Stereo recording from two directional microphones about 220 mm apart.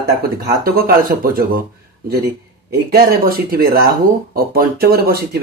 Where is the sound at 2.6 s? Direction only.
45° right (ahead or behind).